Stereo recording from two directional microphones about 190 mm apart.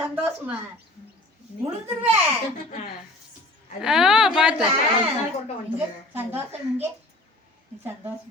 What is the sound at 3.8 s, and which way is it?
Speech, 5° right (ahead or behind).